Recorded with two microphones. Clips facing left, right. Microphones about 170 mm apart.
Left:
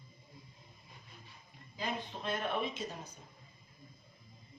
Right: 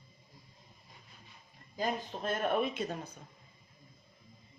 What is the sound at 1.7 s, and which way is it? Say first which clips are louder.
Speech: right 5 dB; 45° right (ahead or behind).